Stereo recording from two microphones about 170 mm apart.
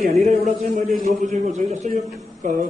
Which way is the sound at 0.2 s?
45° right (ahead or behind).